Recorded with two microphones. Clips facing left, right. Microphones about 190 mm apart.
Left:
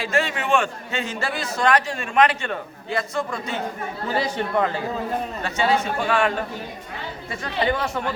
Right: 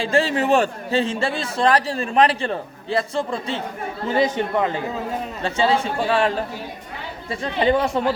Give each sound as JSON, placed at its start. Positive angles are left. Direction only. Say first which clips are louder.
{"t": 0.0, "sound": "a man's voice", "louder": "right 5 dB", "side_deg": -30}
{"t": 7.5, "sound": "speech", "louder": "right 5 dB", "side_deg": -20}